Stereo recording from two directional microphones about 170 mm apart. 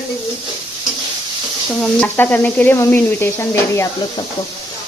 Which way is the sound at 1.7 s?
10° left (ahead or behind).